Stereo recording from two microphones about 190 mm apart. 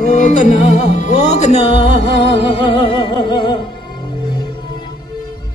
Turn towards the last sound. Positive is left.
turn(degrees=25)  # may be behind; listen again after turning